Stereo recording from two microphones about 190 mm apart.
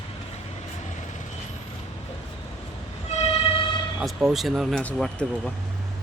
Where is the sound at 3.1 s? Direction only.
35° left (ahead or behind).